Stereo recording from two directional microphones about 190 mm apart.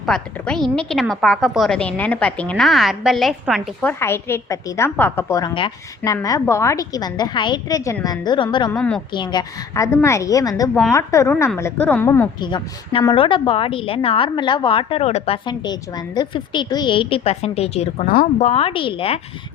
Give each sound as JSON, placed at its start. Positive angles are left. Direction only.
{"t": 0.0, "sound": "a woman's voice", "side_deg": 5}
{"t": 12.4, "sound": "a woman's voice", "side_deg": 25}
{"t": 18.1, "sound": "speech", "side_deg": 45}